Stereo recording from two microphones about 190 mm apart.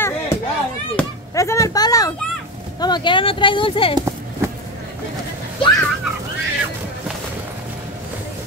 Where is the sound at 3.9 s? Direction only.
15° right (ahead or behind).